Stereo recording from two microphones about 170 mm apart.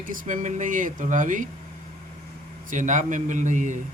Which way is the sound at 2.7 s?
50° right (ahead or behind).